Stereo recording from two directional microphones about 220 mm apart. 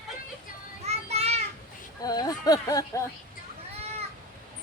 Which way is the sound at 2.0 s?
15° left (ahead or behind).